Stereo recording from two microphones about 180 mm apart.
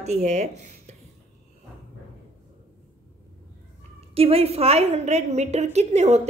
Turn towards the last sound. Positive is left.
turn(degrees=-40)  # may be behind; listen again after turning